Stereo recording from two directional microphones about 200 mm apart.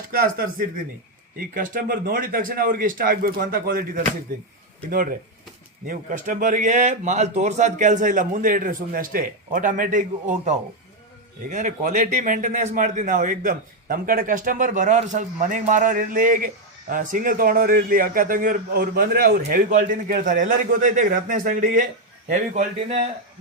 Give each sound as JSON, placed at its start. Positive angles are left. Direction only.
{"t": 0.1, "sound": "a man's voice", "side_deg": -45}
{"t": 5.8, "sound": "a man's voice", "side_deg": -45}
{"t": 22.3, "sound": "a man's voice", "side_deg": -35}